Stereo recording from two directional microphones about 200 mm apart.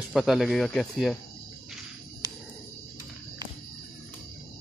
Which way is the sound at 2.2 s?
20° right (ahead or behind).